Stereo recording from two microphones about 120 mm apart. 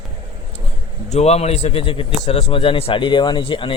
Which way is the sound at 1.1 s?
65° left (ahead or behind).